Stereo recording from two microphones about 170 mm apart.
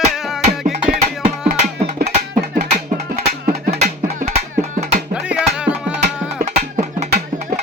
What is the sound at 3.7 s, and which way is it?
Music, 40° right (ahead or behind).